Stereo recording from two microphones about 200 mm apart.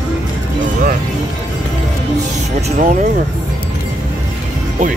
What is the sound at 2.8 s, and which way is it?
Music, 40° right (ahead or behind).